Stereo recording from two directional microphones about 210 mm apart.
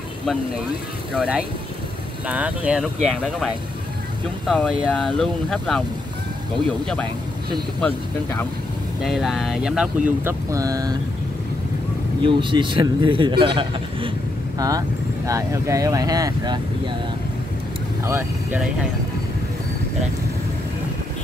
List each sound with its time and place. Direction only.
1.1 s speech: centre (ahead or behind)
7.8 s speech: 10° left (ahead or behind); by 11.0 s 15° right (ahead or behind)
12.2 s speech: 25° right (ahead or behind)
18.0 s speech: 10° right (ahead or behind)